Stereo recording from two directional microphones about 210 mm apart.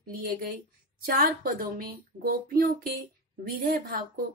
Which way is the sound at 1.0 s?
45° right (ahead or behind).